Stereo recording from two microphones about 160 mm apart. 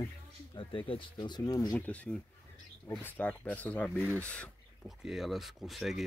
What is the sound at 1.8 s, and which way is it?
Speech, 10° left (ahead or behind).